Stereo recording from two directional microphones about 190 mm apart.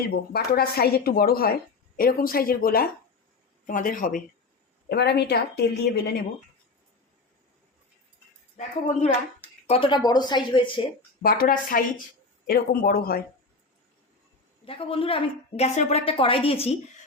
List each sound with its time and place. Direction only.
0.3 s a woman's voice: 55° left (ahead or behind)
4.9 s a woman's voice: 60° left (ahead or behind)
8.5 s speech: 35° left (ahead or behind)
11.2 s a woman's voice: 50° left (ahead or behind)
14.6 s speech: 30° left (ahead or behind)